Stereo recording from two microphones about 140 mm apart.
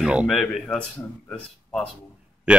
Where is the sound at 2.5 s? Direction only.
5° right (ahead or behind).